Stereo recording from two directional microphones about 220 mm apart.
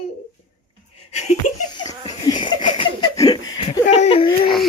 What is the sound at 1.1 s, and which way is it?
Laughter, 30° left (ahead or behind).